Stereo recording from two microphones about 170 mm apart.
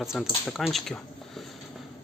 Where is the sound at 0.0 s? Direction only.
Centre (ahead or behind).